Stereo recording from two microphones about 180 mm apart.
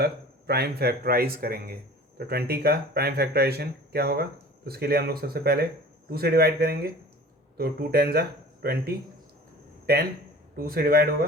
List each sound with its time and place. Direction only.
0.0 s speech: 60° right (ahead or behind)
9.9 s speech: 55° right (ahead or behind)